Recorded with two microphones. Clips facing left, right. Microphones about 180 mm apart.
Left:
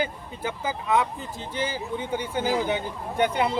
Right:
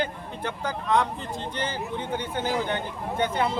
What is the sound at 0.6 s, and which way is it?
Speech, 5° left (ahead or behind).